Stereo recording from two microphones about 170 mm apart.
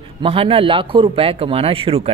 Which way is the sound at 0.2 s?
30° right (ahead or behind).